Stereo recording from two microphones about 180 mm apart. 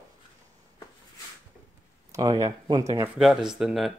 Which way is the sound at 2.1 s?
20° right (ahead or behind).